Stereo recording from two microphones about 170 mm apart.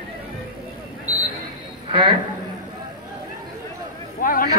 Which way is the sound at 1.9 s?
30° right (ahead or behind).